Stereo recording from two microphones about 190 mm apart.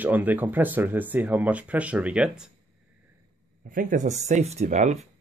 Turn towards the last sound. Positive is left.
turn(degrees=-40)  # may be behind; listen again after turning